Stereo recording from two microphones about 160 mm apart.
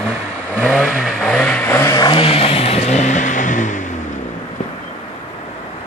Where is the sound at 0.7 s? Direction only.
Centre (ahead or behind); by 3.8 s 50° left (ahead or behind).